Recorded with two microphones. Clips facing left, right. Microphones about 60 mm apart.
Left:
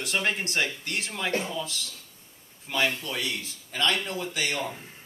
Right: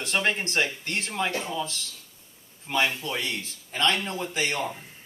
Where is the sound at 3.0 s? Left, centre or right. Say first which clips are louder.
Right 1 dB; right.